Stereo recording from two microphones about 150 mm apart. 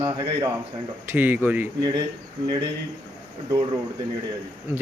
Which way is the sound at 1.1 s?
15° right (ahead or behind).